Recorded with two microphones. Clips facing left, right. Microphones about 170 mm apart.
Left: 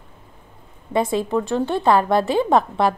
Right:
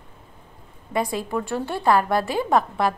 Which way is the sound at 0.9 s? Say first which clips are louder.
Left 5 dB; 25° left (ahead or behind).